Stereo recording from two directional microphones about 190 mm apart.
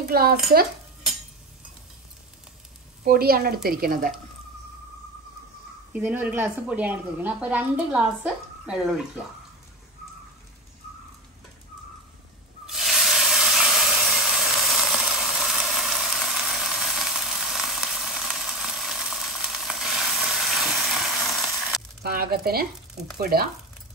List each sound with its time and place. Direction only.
0.1 s a woman's voice: 55° right (ahead or behind)
3.0 s a woman's voice: 55° right (ahead or behind)
5.9 s speech: 10° right (ahead or behind)
12.6 s a sound: centre (ahead or behind)
22.0 s a sound: 55° right (ahead or behind)
23.1 s a woman's voice: 50° right (ahead or behind)